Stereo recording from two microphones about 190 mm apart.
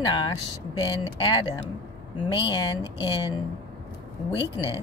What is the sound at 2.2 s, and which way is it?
Speech, 25° left (ahead or behind).